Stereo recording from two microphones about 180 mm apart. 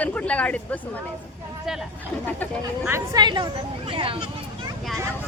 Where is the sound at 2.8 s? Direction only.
15° right (ahead or behind).